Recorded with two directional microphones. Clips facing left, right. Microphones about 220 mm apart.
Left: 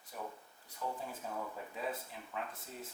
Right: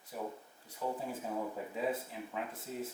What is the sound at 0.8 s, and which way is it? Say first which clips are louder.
Speech: right 4 dB; 20° right (ahead or behind).